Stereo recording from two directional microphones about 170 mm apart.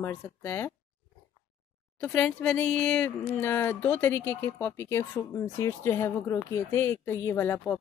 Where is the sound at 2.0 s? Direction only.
10° left (ahead or behind).